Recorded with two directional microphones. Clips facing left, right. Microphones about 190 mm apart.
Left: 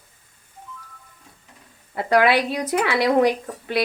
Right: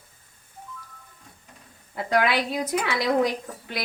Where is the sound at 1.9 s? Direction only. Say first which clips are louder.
Left 5 dB; 65° left (ahead or behind).